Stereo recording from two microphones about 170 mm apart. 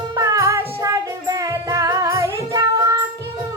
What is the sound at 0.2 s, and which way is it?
Music, 20° right (ahead or behind).